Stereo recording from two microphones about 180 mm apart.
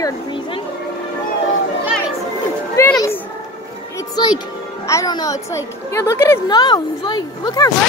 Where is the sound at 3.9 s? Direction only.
25° left (ahead or behind).